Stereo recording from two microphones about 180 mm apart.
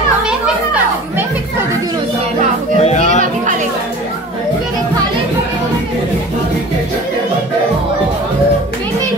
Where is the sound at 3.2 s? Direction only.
45° right (ahead or behind).